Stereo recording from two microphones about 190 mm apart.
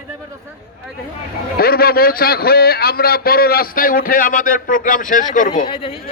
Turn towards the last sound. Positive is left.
turn(degrees=30)  # may be behind; listen again after turning